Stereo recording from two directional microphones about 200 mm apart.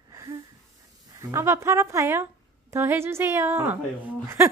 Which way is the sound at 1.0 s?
15° right (ahead or behind).